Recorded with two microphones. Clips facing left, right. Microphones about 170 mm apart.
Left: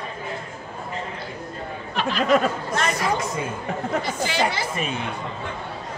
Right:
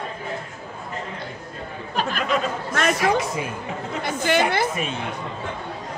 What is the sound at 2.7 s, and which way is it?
Speech, 60° right (ahead or behind).